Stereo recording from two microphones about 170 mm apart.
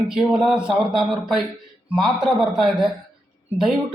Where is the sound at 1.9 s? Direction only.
Centre (ahead or behind).